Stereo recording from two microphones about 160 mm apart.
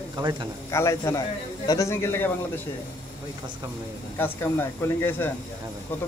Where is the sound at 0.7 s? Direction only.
15° left (ahead or behind).